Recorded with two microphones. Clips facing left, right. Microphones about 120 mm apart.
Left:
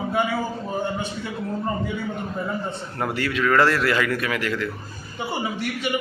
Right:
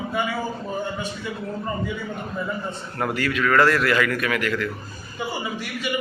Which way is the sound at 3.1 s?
25° left (ahead or behind).